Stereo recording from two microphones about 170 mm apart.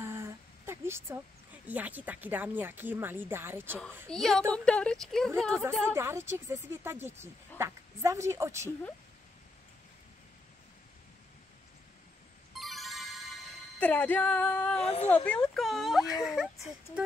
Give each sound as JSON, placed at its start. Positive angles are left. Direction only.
{"t": 0.0, "sound": "a sound", "side_deg": -15}
{"t": 1.7, "sound": "a woman's voice", "side_deg": -10}
{"t": 4.1, "sound": "a woman's voice", "side_deg": 5}
{"t": 5.9, "sound": "a woman's voice", "side_deg": -15}
{"t": 12.5, "sound": "music", "side_deg": 0}
{"t": 14.8, "sound": "speech", "side_deg": 40}
{"t": 15.2, "sound": "speech", "side_deg": 5}